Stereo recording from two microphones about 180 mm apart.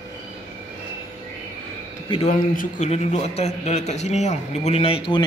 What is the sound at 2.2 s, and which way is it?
A man's voice, 45° left (ahead or behind).